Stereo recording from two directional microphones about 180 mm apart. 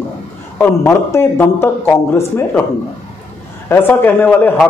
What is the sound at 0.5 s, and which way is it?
Speech, 15° left (ahead or behind).